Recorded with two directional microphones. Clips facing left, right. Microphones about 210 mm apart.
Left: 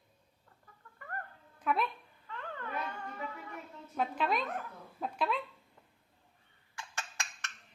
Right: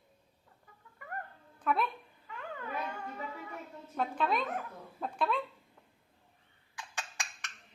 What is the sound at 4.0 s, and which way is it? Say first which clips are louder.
Speech: right 1 dB; 5° left (ahead or behind).